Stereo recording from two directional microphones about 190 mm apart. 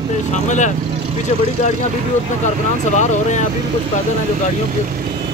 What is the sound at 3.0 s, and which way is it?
Speech, 40° left (ahead or behind).